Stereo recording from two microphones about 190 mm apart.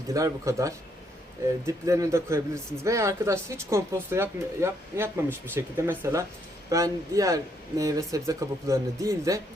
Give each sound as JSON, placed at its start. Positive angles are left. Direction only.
{"t": 0.1, "sound": "a man's voice", "side_deg": -15}